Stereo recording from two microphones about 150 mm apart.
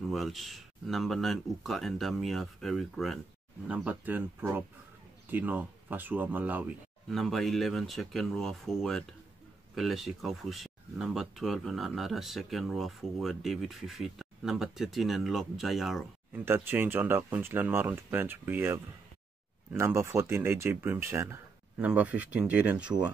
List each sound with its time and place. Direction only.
0.1 s speech: centre (ahead or behind)
7.1 s speech: centre (ahead or behind)
16.3 s speech: 15° right (ahead or behind)